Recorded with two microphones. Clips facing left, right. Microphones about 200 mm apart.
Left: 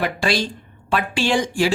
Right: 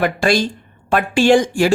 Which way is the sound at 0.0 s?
50° right (ahead or behind).